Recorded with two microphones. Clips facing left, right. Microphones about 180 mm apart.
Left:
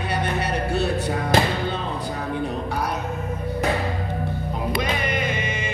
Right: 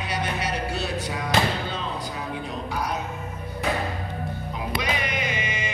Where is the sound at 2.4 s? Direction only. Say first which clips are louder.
Left 4 dB; 60° left (ahead or behind).